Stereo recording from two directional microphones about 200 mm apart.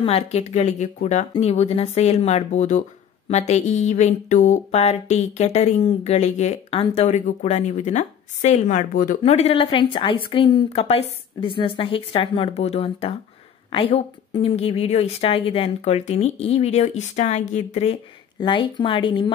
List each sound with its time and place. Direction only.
0.0 s speech: 30° left (ahead or behind)
18.4 s speech: 25° left (ahead or behind)